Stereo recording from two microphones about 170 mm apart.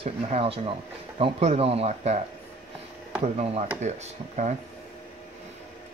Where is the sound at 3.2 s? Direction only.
40° right (ahead or behind).